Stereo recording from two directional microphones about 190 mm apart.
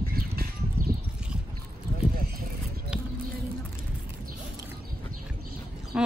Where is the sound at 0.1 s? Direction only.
55° right (ahead or behind).